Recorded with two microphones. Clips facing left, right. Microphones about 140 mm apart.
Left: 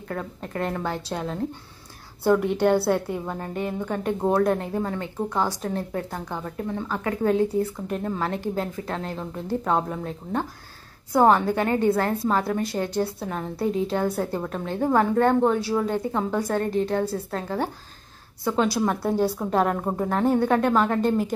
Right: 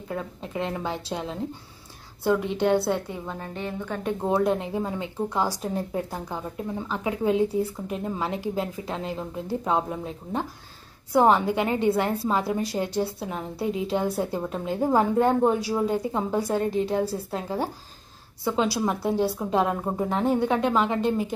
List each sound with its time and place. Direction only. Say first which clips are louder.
0.1 s a woman's voice: left 1 dB; 10° right (ahead or behind)
2.6 s a woman's voice: left 2 dB; 5° left (ahead or behind)
4.3 s a woman's voice: left 1 dB; 5° right (ahead or behind)
11.1 s a woman's voice: left 1 dB; 5° right (ahead or behind)